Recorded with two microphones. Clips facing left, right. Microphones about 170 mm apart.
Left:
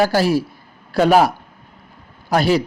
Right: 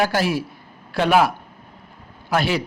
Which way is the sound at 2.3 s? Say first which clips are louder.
Left 5 dB; 40° left (ahead or behind).